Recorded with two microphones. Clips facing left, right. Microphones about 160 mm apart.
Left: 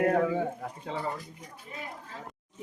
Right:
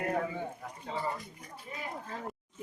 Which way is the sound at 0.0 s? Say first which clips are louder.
Left 8 dB; 65° left (ahead or behind).